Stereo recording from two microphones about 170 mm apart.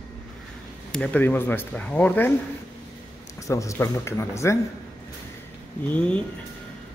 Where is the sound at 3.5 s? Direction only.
20° left (ahead or behind).